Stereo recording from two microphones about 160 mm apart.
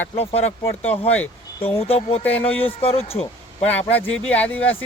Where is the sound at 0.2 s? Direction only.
40° left (ahead or behind).